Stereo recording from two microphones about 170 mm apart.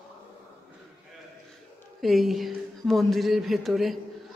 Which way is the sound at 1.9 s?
Centre (ahead or behind).